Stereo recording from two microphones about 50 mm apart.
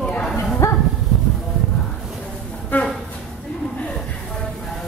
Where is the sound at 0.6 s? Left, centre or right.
Left.